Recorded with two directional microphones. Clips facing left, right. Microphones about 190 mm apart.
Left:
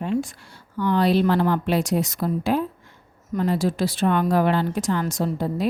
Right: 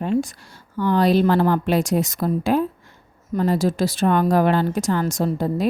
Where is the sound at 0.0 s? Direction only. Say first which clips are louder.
Right 3 dB; 40° right (ahead or behind).